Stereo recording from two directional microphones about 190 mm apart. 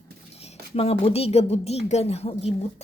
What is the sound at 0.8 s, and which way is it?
Speech, 30° left (ahead or behind).